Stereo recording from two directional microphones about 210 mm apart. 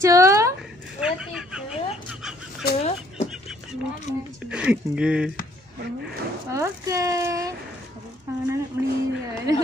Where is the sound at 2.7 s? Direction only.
30° left (ahead or behind).